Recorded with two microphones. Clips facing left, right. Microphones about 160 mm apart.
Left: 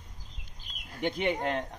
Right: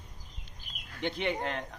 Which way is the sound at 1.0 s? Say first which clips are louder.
Left 3 dB; 15° left (ahead or behind).